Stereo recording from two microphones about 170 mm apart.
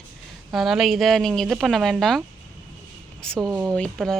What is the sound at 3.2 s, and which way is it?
Speech, 5° left (ahead or behind).